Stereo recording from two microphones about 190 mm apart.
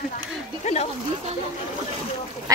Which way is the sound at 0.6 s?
35° left (ahead or behind).